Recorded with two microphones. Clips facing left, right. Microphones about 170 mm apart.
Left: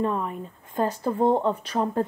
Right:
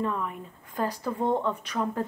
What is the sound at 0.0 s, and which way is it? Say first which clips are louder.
Speech: left 4 dB; 30° left (ahead or behind).